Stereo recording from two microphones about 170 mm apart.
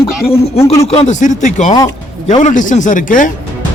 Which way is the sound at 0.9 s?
40° left (ahead or behind).